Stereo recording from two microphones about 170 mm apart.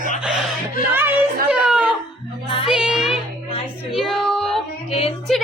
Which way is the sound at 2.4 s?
30° left (ahead or behind).